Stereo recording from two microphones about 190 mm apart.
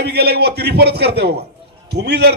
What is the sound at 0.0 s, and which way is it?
A man's voice, 60° right (ahead or behind).